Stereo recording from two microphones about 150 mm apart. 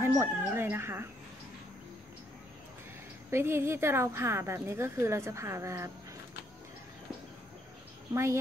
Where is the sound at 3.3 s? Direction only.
15° right (ahead or behind).